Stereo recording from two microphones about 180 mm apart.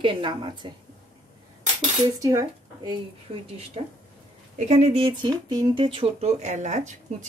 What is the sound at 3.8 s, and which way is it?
Speech, 35° right (ahead or behind).